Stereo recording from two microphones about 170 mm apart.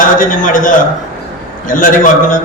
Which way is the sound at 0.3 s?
50° left (ahead or behind).